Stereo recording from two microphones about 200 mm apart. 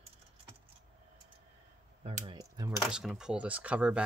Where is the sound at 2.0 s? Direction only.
25° right (ahead or behind).